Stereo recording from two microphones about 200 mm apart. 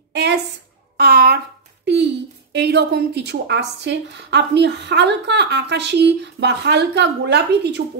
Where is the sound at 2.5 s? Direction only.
55° right (ahead or behind).